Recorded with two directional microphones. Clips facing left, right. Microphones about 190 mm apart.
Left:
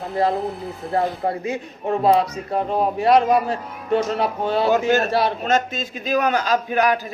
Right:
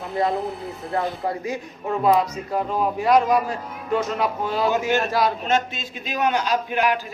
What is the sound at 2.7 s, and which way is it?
A man's voice, 30° left (ahead or behind).